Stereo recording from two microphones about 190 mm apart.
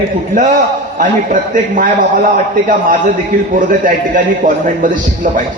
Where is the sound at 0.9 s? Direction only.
45° right (ahead or behind).